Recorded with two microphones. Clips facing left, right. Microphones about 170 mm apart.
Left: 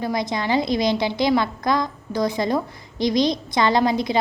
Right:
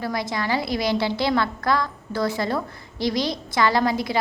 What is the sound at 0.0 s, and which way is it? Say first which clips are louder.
A woman's voice: left 2 dB; 20° left (ahead or behind).